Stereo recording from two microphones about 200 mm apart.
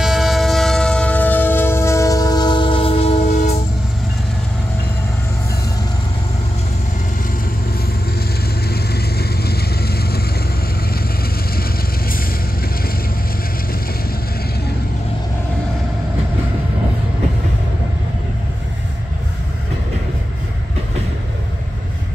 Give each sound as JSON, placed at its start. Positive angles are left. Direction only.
{"t": 0.0, "sound": "train", "side_deg": 0}
{"t": 8.6, "sound": "vehicle", "side_deg": 50}